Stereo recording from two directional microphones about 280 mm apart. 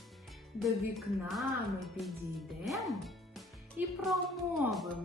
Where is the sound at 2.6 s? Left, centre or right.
Centre.